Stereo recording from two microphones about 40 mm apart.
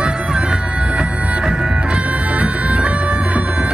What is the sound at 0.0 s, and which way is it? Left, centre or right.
Bagpipes, right.